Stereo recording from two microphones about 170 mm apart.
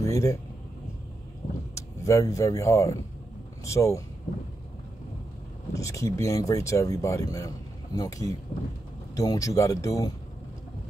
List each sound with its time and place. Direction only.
0.0 s vehicle: 20° left (ahead or behind)
1.8 s speech: 20° left (ahead or behind)
5.7 s speech: 20° left (ahead or behind)